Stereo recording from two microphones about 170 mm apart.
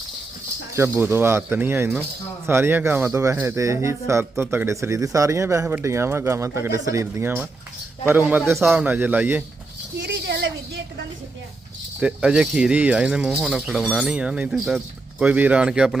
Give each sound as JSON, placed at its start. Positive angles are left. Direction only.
{"t": 0.8, "sound": "speech", "side_deg": -15}
{"t": 10.0, "sound": "a sound", "side_deg": -85}
{"t": 11.9, "sound": "speech", "side_deg": -5}